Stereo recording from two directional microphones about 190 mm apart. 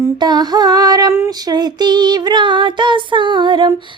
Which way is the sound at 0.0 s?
20° right (ahead or behind).